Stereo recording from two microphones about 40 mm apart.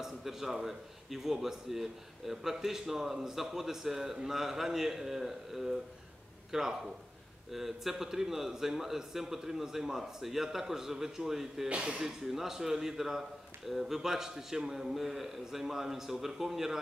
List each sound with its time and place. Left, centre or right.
0.0 s speech: centre
11.7 s speech: right
12.0 s speech: centre